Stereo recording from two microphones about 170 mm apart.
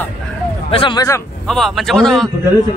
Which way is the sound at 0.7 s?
30° left (ahead or behind).